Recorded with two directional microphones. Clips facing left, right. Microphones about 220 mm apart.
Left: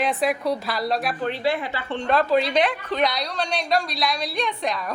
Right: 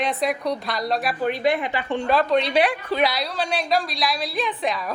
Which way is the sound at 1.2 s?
15° right (ahead or behind).